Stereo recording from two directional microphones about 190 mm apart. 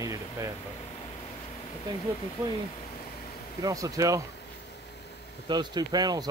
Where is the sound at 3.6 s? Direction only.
15° right (ahead or behind).